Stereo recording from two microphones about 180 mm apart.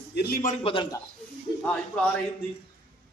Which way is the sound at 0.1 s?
60° left (ahead or behind).